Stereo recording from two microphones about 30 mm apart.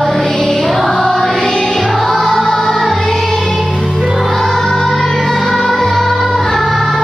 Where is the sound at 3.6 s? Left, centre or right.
Centre.